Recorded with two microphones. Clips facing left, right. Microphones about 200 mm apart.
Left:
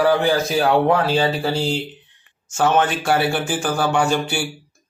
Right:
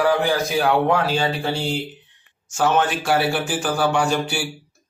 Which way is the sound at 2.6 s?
Centre (ahead or behind).